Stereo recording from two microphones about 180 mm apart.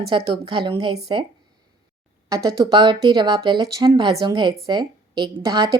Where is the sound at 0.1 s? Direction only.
30° right (ahead or behind).